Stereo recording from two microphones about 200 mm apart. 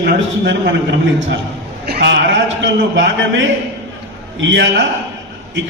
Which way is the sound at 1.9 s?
55° right (ahead or behind).